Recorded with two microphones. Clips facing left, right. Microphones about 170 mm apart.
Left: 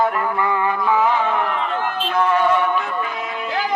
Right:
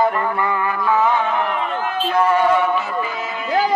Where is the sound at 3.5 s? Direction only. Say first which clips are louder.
Right 5 dB; 40° right (ahead or behind).